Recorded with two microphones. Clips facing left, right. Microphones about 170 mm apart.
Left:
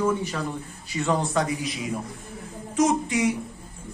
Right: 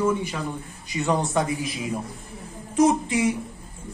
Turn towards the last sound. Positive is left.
turn(degrees=-30)  # may be behind; listen again after turning